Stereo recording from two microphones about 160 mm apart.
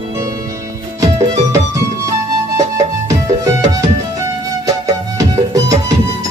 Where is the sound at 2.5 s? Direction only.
20° right (ahead or behind).